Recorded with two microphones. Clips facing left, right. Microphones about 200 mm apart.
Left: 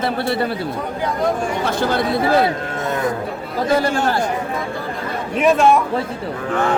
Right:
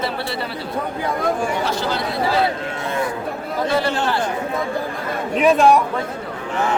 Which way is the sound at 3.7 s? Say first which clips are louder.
Left 4 dB; 45° left (ahead or behind).